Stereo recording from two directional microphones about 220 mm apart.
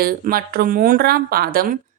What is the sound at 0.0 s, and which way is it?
A woman's voice, 45° right (ahead or behind).